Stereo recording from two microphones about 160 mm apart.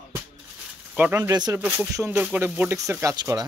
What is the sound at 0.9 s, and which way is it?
Speech, 10° right (ahead or behind).